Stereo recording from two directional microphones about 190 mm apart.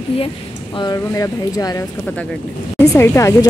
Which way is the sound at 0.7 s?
20° left (ahead or behind).